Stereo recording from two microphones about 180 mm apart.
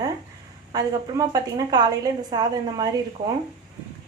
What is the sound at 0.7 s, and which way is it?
A woman's voice, 20° right (ahead or behind).